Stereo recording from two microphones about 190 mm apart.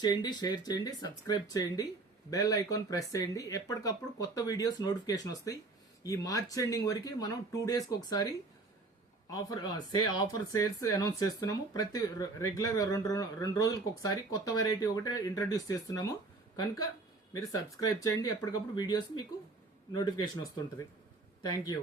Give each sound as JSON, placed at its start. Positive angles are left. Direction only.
{"t": 0.0, "sound": "speech", "side_deg": 20}